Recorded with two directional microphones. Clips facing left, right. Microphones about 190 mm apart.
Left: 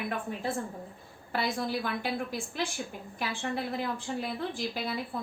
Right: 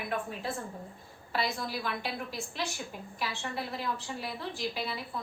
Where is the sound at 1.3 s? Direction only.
50° left (ahead or behind).